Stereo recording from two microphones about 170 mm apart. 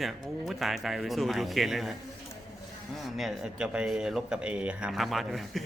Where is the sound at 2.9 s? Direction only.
Centre (ahead or behind).